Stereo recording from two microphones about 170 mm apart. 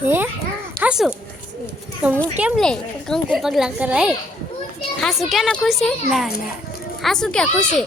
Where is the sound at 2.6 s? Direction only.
5° left (ahead or behind).